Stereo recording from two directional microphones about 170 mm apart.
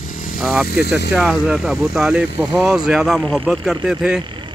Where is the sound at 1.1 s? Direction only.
5° right (ahead or behind).